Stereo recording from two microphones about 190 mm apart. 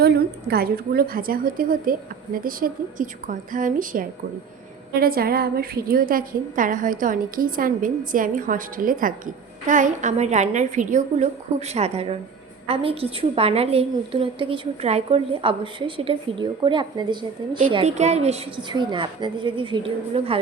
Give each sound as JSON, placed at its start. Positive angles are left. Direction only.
{"t": 0.0, "sound": "a woman's voice", "side_deg": -55}